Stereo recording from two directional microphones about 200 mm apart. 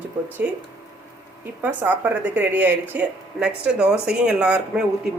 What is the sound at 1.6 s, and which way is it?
A woman's voice, 10° right (ahead or behind).